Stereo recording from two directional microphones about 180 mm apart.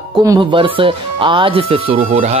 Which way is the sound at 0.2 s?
20° right (ahead or behind).